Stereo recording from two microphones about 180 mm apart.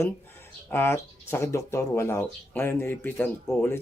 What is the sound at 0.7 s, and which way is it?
Speech, 15° left (ahead or behind).